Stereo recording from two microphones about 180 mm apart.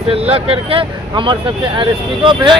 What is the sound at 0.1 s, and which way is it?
Speech, 30° right (ahead or behind).